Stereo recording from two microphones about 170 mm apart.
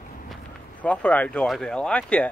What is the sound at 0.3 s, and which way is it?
Speech, 10° left (ahead or behind).